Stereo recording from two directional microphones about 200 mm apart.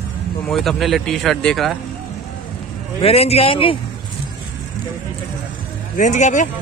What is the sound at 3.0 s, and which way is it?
Speech, 30° left (ahead or behind).